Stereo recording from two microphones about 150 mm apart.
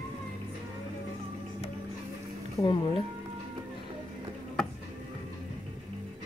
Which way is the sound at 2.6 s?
35° left (ahead or behind).